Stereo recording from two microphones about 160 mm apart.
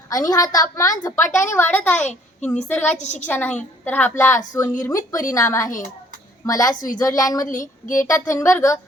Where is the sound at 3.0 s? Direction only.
50° left (ahead or behind).